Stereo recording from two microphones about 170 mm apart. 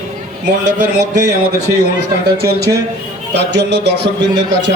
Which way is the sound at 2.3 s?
70° right (ahead or behind).